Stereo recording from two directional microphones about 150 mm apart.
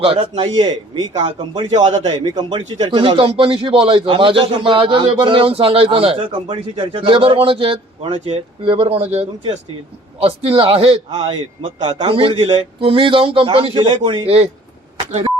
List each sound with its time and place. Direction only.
0.0 s a man's voice: 40° right (ahead or behind)